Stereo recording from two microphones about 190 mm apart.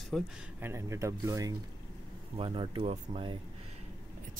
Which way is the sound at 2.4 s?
30° right (ahead or behind).